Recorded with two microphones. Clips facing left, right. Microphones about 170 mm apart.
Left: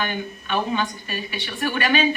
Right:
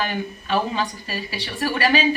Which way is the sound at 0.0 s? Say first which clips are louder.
Right 1 dB; 35° right (ahead or behind).